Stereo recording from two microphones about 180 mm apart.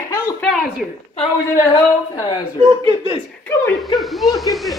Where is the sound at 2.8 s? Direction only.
25° right (ahead or behind).